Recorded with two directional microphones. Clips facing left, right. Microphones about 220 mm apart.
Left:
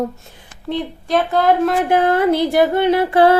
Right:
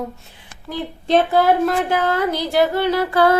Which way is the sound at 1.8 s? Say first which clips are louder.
Left 5 dB; 55° left (ahead or behind).